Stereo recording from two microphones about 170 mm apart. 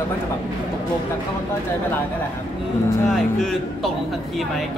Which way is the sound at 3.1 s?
Centre (ahead or behind).